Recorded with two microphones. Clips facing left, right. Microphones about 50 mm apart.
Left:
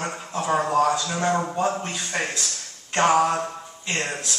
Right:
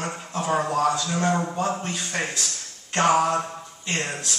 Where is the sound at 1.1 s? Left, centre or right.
Centre.